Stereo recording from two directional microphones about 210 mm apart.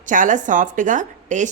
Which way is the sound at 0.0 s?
40° right (ahead or behind).